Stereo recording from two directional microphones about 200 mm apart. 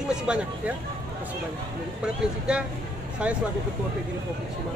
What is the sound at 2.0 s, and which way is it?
Speech, 5° right (ahead or behind).